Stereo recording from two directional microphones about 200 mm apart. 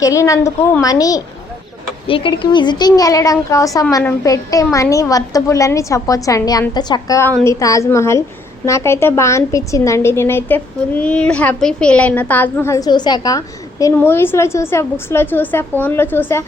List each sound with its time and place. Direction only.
0.0 s a woman's voice: 15° left (ahead or behind)